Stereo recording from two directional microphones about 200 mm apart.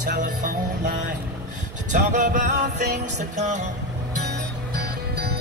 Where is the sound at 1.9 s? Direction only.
40° right (ahead or behind).